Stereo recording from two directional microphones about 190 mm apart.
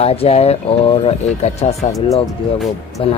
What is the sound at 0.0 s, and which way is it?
Speech, 30° left (ahead or behind).